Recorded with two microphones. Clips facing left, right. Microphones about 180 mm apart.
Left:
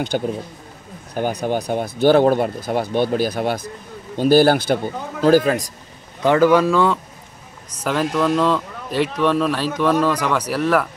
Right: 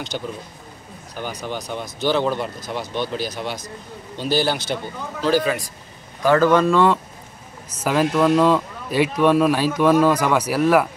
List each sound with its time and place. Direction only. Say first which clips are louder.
1.1 s speech: left 8 dB; 50° left (ahead or behind)
6.2 s a man's voice: left 1 dB; 15° left (ahead or behind); by 10.9 s 10° right (ahead or behind)